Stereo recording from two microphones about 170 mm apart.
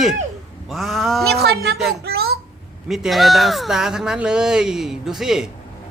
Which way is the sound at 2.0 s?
70° right (ahead or behind).